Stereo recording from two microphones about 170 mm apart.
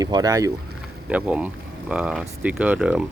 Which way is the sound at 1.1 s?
10° right (ahead or behind).